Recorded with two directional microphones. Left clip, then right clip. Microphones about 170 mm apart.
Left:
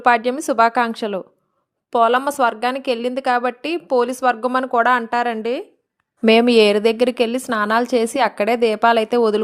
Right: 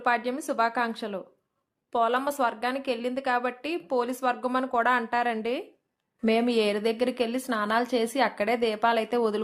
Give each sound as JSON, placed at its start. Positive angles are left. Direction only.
{"t": 0.0, "sound": "a woman's voice", "side_deg": 45}
{"t": 6.2, "sound": "a woman's voice", "side_deg": 55}